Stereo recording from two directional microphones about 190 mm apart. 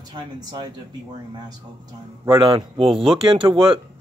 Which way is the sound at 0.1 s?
20° right (ahead or behind).